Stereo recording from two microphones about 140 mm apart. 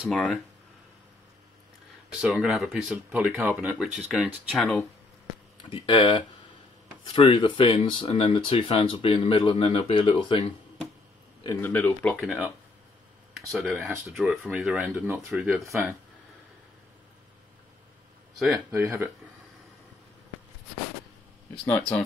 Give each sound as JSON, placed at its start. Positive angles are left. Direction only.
{"t": 0.1, "sound": "speech", "side_deg": 5}
{"t": 2.0, "sound": "speech", "side_deg": -5}
{"t": 5.6, "sound": "speech", "side_deg": 35}
{"t": 11.4, "sound": "speech", "side_deg": 15}
{"t": 12.2, "sound": "speech", "side_deg": 0}
{"t": 13.6, "sound": "speech", "side_deg": -10}
{"t": 18.7, "sound": "speech", "side_deg": -20}
{"t": 21.6, "sound": "speech", "side_deg": 10}